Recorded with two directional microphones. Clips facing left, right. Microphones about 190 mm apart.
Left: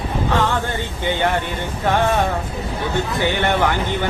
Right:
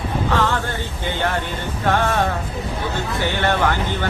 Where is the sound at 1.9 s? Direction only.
15° left (ahead or behind).